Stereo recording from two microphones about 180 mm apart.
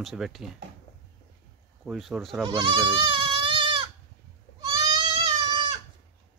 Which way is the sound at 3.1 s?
30° right (ahead or behind).